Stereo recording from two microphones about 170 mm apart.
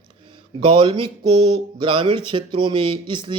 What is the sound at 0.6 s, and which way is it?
Speech, 30° right (ahead or behind).